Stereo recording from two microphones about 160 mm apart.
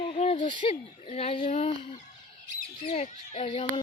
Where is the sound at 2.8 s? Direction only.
40° left (ahead or behind).